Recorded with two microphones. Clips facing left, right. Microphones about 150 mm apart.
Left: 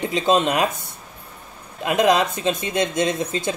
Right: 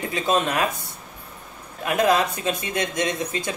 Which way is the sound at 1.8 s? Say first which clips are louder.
Left 2 dB; 20° left (ahead or behind).